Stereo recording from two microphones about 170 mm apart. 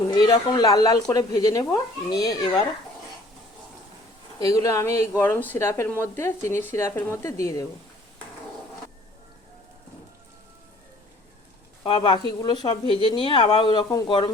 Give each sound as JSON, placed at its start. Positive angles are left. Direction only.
{"t": 0.1, "sound": "speech", "side_deg": 25}
{"t": 4.4, "sound": "speech", "side_deg": 20}
{"t": 11.8, "sound": "speech", "side_deg": 30}